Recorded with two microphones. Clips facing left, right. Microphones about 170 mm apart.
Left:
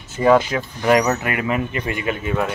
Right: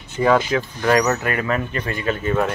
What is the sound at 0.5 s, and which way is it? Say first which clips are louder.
Speech: left 1 dB; 20° left (ahead or behind).